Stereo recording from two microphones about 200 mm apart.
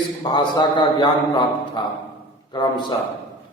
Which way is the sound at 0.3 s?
20° left (ahead or behind).